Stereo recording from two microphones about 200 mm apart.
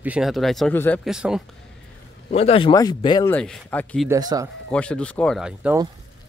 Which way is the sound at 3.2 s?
10° left (ahead or behind).